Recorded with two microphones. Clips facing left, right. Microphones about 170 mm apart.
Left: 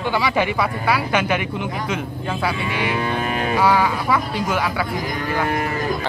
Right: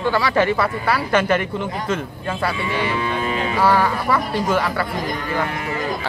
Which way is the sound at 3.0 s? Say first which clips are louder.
Even; 50° left (ahead or behind).